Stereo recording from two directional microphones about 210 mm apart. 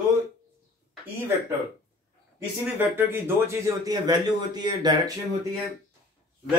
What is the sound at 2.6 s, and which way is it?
Speech, 10° right (ahead or behind).